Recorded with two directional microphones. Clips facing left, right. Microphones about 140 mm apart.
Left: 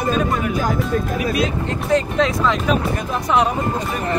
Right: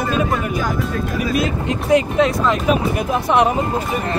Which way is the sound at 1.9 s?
5° right (ahead or behind).